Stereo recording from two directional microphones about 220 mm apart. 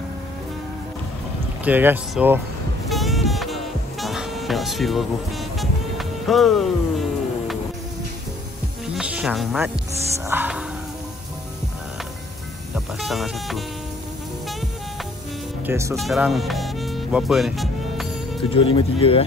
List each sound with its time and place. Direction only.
1.6 s speech: 10° right (ahead or behind)
2.9 s music: centre (ahead or behind)
8.8 s music: 5° right (ahead or behind)
10.1 s speech: 10° right (ahead or behind)
12.7 s speech: centre (ahead or behind)
15.6 s speech: 10° right (ahead or behind)
16.0 s music: centre (ahead or behind)
18.5 s speech: 25° left (ahead or behind)